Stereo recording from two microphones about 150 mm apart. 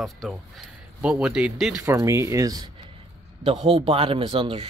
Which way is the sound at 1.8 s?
20° right (ahead or behind).